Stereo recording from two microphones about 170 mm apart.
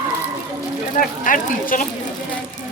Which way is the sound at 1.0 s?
55° left (ahead or behind).